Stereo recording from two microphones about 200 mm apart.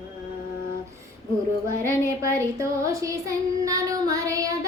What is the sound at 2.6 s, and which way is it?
Child singing, 15° right (ahead or behind).